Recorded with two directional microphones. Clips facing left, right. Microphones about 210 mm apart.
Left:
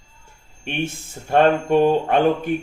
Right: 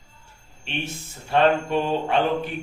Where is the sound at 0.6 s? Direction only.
50° left (ahead or behind).